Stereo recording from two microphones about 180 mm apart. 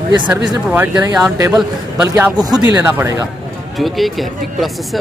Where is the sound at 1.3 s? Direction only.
20° right (ahead or behind).